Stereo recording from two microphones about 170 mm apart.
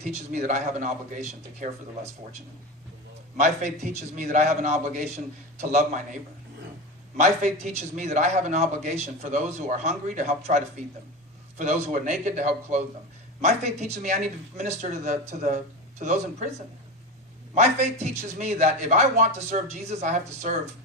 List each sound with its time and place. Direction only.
0.0 s a man's voice: 50° right (ahead or behind)
3.3 s a man's voice: 45° right (ahead or behind)
7.2 s a man's voice: 45° right (ahead or behind)
17.5 s a man's voice: 40° right (ahead or behind)